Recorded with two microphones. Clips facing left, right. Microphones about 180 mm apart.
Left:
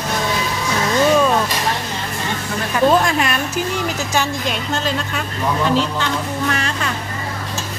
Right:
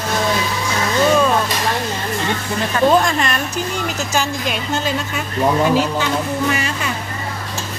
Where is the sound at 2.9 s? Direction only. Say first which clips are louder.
Even; 5° left (ahead or behind).